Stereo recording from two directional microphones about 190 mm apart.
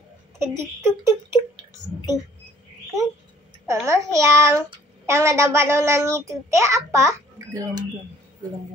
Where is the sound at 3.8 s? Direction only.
15° right (ahead or behind).